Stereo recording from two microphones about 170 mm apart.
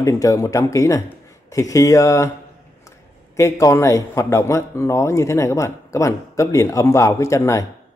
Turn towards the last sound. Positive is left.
turn(degrees=15)  # may be behind; listen again after turning